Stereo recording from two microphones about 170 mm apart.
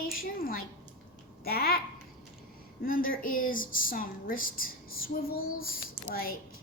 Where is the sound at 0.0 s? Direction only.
55° left (ahead or behind).